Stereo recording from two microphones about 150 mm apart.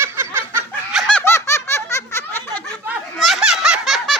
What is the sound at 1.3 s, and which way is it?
Snicker, 20° left (ahead or behind).